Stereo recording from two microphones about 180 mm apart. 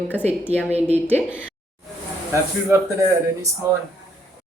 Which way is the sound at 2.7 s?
15° right (ahead or behind).